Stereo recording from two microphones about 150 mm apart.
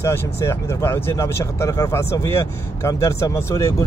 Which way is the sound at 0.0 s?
15° left (ahead or behind).